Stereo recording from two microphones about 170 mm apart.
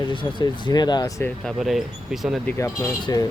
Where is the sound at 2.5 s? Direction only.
15° left (ahead or behind).